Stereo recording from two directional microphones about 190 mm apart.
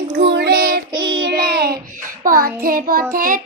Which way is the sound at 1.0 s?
70° right (ahead or behind).